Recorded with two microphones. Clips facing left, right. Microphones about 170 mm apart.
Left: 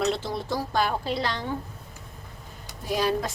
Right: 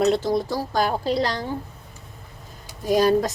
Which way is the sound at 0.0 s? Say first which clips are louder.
Right 7 dB; 40° right (ahead or behind).